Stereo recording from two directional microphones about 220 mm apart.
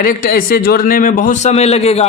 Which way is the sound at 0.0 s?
40° left (ahead or behind).